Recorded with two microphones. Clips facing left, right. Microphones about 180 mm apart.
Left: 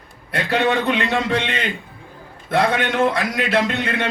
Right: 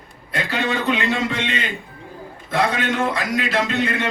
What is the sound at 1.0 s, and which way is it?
A man's voice, 60° left (ahead or behind).